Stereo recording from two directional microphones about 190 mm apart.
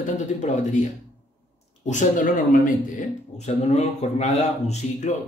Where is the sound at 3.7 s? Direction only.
35° left (ahead or behind).